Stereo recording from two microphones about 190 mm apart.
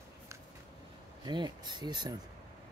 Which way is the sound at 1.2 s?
20° right (ahead or behind).